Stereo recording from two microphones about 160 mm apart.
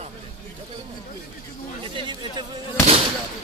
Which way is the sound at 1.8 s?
30° right (ahead or behind).